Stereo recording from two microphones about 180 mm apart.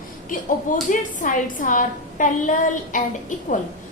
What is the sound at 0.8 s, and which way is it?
A woman's voice, 45° left (ahead or behind).